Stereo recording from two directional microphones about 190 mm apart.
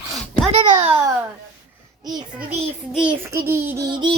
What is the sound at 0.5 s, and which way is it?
Speech, 25° right (ahead or behind).